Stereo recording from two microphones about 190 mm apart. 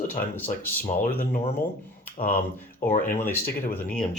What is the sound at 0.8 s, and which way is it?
Speech, 45° left (ahead or behind).